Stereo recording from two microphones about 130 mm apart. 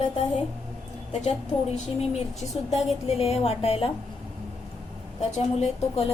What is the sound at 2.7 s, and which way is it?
A woman's voice, 50° left (ahead or behind).